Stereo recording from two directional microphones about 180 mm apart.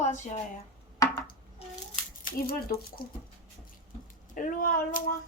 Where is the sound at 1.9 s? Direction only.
55° left (ahead or behind).